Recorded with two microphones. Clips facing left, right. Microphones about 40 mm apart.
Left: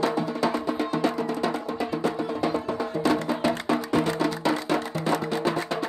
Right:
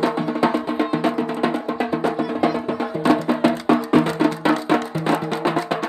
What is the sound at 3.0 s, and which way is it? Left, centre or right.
Music, right.